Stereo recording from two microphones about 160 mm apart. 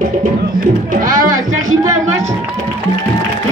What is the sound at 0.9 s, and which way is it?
Music, 60° right (ahead or behind).